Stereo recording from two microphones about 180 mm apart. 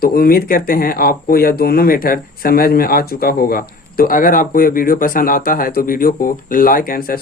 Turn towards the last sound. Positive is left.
turn(degrees=55)  # may be behind; listen again after turning